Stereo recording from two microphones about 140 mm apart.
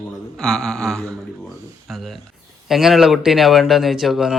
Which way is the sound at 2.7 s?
Centre (ahead or behind).